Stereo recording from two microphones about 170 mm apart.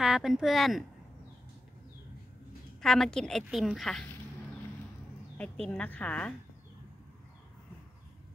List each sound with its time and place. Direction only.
0.0 s a woman's voice: centre (ahead or behind)
2.8 s a woman's voice: 5° left (ahead or behind)
5.4 s a woman's voice: 10° left (ahead or behind)